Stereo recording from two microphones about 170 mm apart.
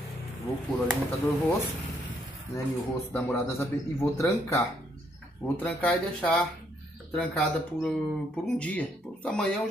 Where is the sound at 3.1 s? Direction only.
15° left (ahead or behind).